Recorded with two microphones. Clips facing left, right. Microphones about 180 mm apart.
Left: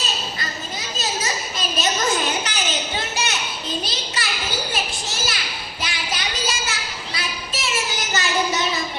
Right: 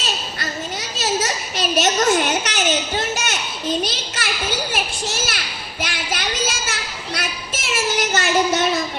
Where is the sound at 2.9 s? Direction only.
45° right (ahead or behind).